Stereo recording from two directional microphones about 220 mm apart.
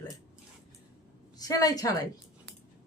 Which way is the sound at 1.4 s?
15° left (ahead or behind).